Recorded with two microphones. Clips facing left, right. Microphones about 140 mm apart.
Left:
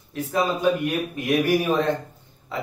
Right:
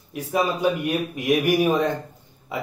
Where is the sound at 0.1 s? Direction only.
15° right (ahead or behind).